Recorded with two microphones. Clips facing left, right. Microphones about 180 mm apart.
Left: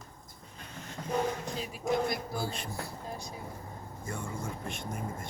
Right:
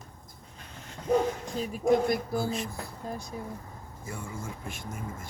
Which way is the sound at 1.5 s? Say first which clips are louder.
Right 9 dB; 50° right (ahead or behind).